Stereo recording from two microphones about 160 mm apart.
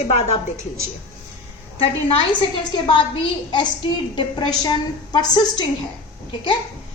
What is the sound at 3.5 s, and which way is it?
A woman's voice, 30° left (ahead or behind).